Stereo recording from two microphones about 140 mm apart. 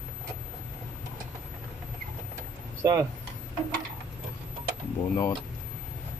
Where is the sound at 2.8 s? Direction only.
25° right (ahead or behind).